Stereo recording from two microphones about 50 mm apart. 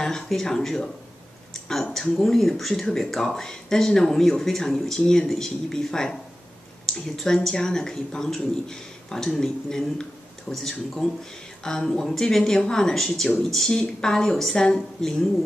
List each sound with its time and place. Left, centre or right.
0.0 s speech: centre